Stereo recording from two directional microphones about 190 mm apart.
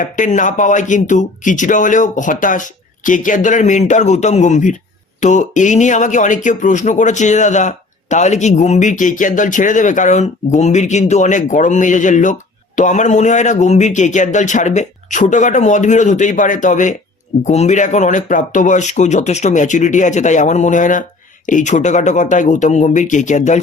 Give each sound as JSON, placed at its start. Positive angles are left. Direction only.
{"t": 0.0, "sound": "speech", "side_deg": 40}